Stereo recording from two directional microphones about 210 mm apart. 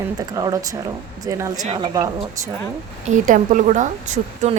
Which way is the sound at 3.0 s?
35° right (ahead or behind).